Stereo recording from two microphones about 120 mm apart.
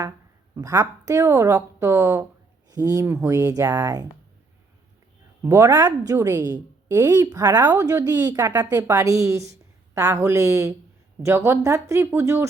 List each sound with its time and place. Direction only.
0.5 s a woman's voice: 30° right (ahead or behind)
5.4 s a woman's voice: 25° right (ahead or behind)